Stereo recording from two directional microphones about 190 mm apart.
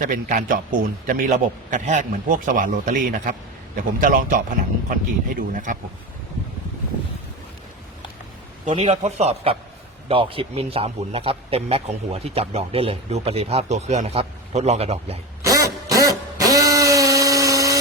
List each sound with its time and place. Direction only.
0.0 s a man's voice: 45° right (ahead or behind)
8.7 s a man's voice: 35° right (ahead or behind)
15.4 s a sound: 15° right (ahead or behind)